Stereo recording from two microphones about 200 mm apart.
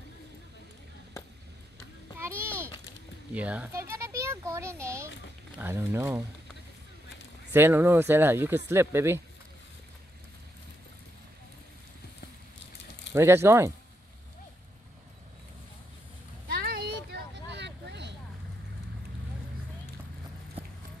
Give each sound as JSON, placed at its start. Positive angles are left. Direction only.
{"t": 2.1, "sound": "a sound", "side_deg": -10}
{"t": 3.3, "sound": "speech", "side_deg": -5}
{"t": 7.5, "sound": "speech", "side_deg": -10}
{"t": 13.1, "sound": "speech", "side_deg": -15}
{"t": 16.4, "sound": "a sound", "side_deg": -55}
{"t": 17.5, "sound": "vehicle", "side_deg": -60}